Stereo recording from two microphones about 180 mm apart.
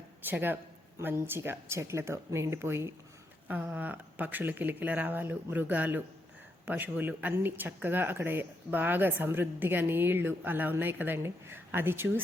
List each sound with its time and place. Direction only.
0.3 s speech: 10° right (ahead or behind)